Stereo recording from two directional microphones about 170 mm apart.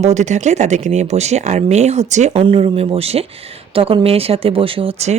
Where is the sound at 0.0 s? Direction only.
45° right (ahead or behind).